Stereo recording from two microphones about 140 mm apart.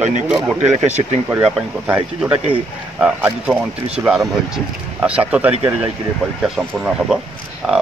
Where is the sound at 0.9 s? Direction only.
50° right (ahead or behind).